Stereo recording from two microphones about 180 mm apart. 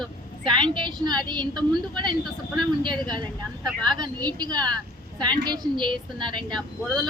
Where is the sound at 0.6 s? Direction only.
25° right (ahead or behind).